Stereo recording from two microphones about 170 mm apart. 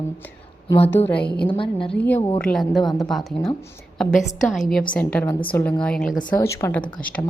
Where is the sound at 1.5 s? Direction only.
30° left (ahead or behind).